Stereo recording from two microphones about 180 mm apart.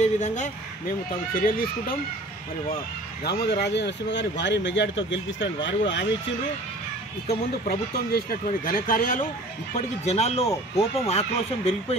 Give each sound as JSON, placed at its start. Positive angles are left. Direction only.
{"t": 0.0, "sound": "speech", "side_deg": 40}
{"t": 3.3, "sound": "speech", "side_deg": 65}
{"t": 7.6, "sound": "speech", "side_deg": 55}
{"t": 9.8, "sound": "speech", "side_deg": 35}